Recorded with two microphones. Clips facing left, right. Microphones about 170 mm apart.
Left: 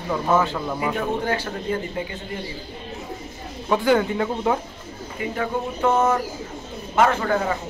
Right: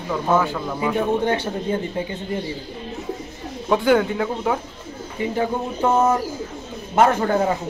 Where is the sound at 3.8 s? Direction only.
Centre (ahead or behind).